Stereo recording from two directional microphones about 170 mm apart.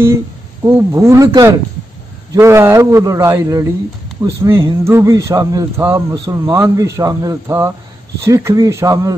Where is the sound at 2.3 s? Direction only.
15° right (ahead or behind).